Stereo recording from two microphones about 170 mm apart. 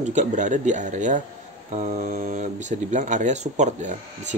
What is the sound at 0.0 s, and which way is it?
Speech, 45° right (ahead or behind).